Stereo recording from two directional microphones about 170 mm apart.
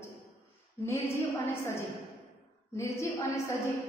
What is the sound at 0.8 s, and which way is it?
Speech, 15° left (ahead or behind).